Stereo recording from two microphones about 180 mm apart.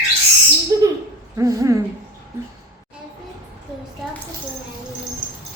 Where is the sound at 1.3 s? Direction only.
20° right (ahead or behind).